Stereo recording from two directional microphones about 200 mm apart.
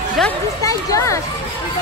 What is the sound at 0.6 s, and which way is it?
Children playing, 15° left (ahead or behind).